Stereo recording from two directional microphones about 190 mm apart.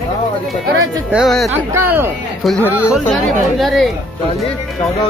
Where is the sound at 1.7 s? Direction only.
10° right (ahead or behind).